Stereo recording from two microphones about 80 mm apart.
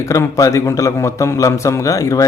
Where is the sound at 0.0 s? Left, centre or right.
Left.